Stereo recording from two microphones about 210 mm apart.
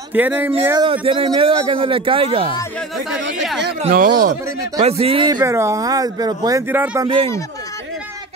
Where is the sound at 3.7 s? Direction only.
35° right (ahead or behind).